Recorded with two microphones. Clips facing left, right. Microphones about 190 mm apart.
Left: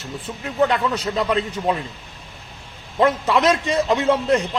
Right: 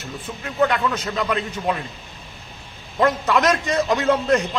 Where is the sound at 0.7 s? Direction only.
30° left (ahead or behind).